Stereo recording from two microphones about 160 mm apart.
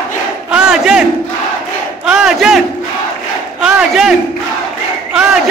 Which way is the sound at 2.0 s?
5° right (ahead or behind).